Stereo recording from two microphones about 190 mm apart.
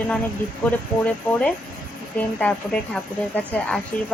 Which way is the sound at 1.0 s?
5° left (ahead or behind).